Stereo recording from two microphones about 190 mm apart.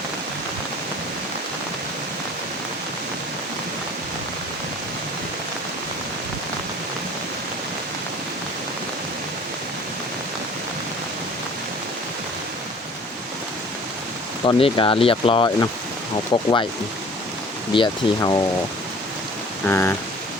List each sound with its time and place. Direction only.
14.4 s speech: 25° left (ahead or behind)
17.7 s speech: 25° left (ahead or behind)
19.6 s speech: 10° left (ahead or behind)